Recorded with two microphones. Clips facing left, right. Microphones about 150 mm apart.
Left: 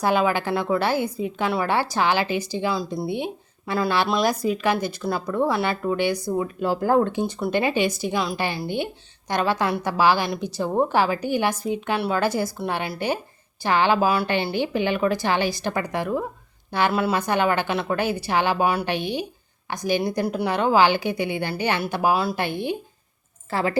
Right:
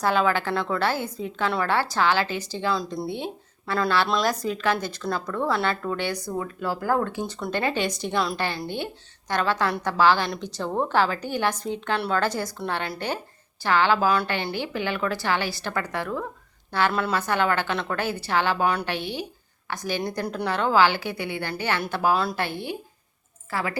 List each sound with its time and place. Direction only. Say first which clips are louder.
0.0 s speech: left 2 dB; 15° left (ahead or behind)
3.1 s speech: left 4 dB; 15° left (ahead or behind)